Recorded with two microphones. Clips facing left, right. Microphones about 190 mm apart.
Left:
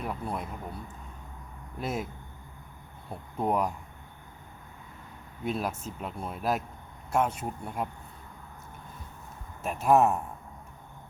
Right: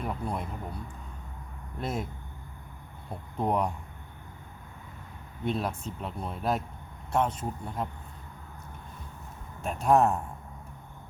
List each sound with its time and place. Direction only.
0.0 s speech: centre (ahead or behind)
1.8 s speech: 5° left (ahead or behind)
3.1 s speech: 5° left (ahead or behind)
5.5 s speech: 5° left (ahead or behind)
9.6 s speech: 5° left (ahead or behind)